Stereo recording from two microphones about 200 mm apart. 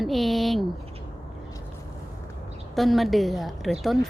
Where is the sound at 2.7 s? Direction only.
Centre (ahead or behind).